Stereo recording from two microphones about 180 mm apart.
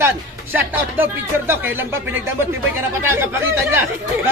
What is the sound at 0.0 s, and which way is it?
Speech, 10° right (ahead or behind).